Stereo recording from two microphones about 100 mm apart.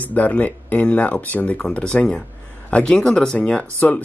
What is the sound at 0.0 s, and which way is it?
Speech, 15° left (ahead or behind).